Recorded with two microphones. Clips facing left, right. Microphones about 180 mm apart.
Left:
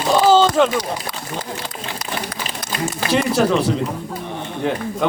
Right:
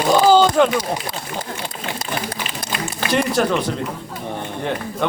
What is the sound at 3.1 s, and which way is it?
Speech, centre (ahead or behind).